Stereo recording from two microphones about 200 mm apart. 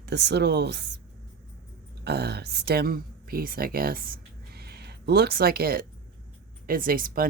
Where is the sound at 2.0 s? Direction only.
55° right (ahead or behind).